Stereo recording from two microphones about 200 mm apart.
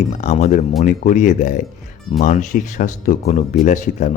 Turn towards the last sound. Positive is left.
turn(degrees=40)  # may be behind; listen again after turning